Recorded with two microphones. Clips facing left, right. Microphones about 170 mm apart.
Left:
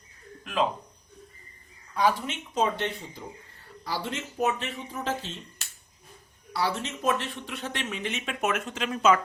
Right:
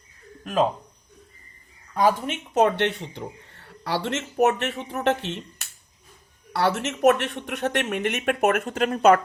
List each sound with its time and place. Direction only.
0.4 s speech: 45° right (ahead or behind)
2.0 s speech: 50° right (ahead or behind)